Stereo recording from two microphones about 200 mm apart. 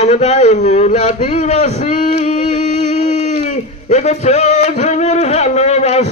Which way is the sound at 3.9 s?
35° left (ahead or behind).